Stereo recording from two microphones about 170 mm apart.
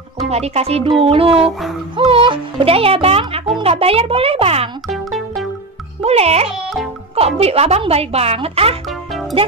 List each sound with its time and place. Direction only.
0.3 s speech: 35° right (ahead or behind)
4.8 s music: centre (ahead or behind)
6.0 s speech: 40° right (ahead or behind)